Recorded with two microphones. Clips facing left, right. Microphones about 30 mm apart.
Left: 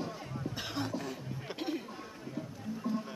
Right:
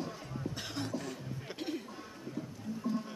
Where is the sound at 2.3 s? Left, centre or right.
Centre.